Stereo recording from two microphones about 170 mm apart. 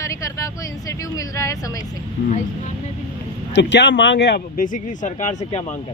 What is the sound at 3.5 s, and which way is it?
Speech, 90° left.